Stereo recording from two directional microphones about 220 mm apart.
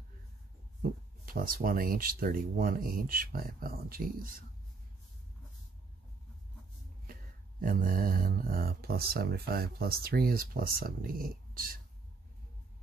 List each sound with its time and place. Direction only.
1.2 s speech: 40° right (ahead or behind)
7.6 s speech: 40° right (ahead or behind)